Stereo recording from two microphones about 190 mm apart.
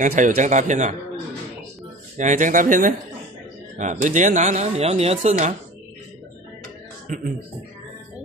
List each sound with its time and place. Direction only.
0.0 s speech: 40° right (ahead or behind)
2.1 s speech: 40° right (ahead or behind)
7.1 s speech: 45° right (ahead or behind)